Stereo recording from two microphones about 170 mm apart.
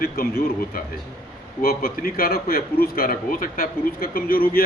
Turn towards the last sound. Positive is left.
turn(degrees=60)  # may be behind; listen again after turning